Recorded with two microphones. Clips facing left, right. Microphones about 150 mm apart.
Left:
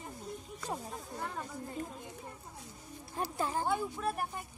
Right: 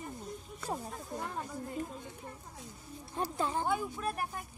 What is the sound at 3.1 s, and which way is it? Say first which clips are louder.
Speech: right 1 dB; 5° left (ahead or behind).